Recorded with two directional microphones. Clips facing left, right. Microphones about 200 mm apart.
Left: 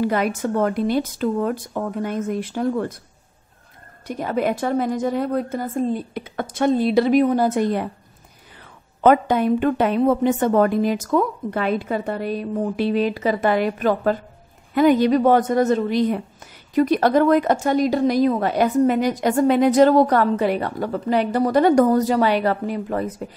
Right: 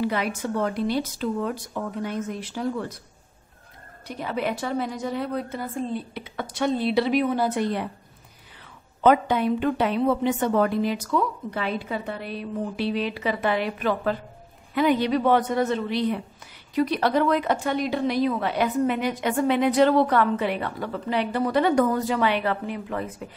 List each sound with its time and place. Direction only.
0.0 s a woman's voice: 45° left (ahead or behind)
4.1 s a woman's voice: 45° left (ahead or behind)
9.0 s a woman's voice: 45° left (ahead or behind)